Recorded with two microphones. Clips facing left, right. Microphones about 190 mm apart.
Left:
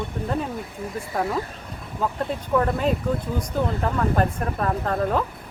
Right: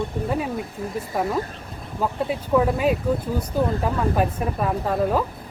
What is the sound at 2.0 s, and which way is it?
Speech, 5° right (ahead or behind).